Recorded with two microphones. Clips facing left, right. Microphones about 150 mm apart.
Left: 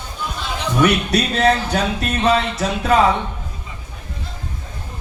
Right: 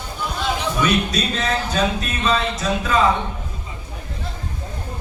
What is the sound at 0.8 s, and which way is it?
Speech, 70° left (ahead or behind).